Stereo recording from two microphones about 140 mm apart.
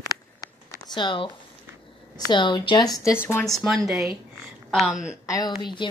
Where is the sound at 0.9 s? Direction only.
35° left (ahead or behind).